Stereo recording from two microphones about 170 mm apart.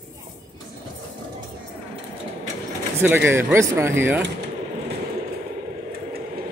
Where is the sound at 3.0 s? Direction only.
10° right (ahead or behind).